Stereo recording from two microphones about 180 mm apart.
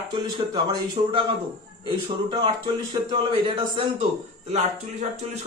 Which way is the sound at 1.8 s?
25° right (ahead or behind).